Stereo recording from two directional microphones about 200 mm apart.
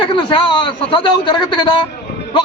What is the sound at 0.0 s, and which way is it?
A man's voice, 25° left (ahead or behind).